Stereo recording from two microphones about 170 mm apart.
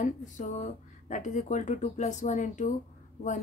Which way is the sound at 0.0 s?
45° left (ahead or behind).